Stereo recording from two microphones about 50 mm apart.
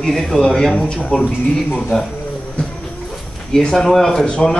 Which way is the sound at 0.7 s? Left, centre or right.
Left.